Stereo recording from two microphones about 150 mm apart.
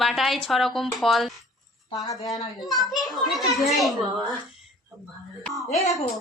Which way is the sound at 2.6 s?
25° left (ahead or behind).